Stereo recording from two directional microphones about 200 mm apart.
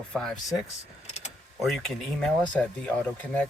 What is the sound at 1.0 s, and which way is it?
Mechanisms, 35° left (ahead or behind).